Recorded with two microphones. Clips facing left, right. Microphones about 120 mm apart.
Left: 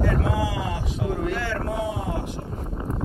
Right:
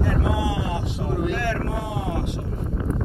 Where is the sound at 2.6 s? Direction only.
15° left (ahead or behind).